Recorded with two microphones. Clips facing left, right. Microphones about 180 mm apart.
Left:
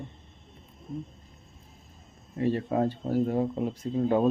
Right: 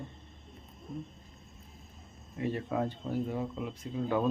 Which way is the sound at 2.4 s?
30° left (ahead or behind).